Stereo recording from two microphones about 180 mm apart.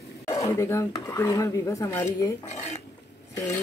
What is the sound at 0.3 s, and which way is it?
Speech, 20° left (ahead or behind).